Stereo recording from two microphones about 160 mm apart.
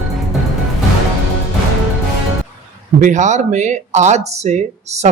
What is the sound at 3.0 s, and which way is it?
A man's voice, 50° right (ahead or behind).